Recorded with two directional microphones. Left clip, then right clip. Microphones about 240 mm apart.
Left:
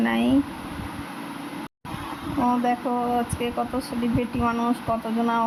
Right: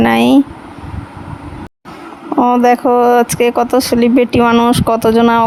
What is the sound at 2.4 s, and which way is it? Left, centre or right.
Speech, right.